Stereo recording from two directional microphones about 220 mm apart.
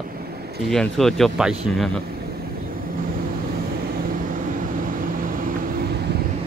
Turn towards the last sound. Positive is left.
turn(degrees=-40)  # may be behind; listen again after turning